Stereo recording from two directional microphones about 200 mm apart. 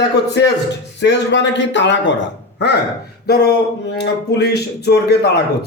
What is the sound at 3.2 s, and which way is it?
A man's voice, 55° left (ahead or behind).